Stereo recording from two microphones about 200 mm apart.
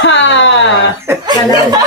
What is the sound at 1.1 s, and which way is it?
Speech, 15° right (ahead or behind).